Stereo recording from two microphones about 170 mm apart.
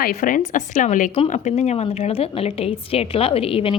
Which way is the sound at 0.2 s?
50° left (ahead or behind).